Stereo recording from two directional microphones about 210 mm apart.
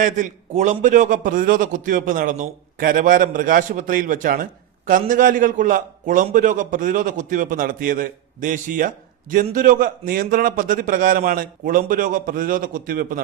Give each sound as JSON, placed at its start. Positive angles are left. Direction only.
{"t": 0.0, "sound": "a man's voice", "side_deg": -35}